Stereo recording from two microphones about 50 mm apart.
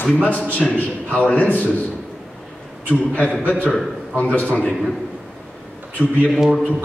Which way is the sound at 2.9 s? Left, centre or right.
Left.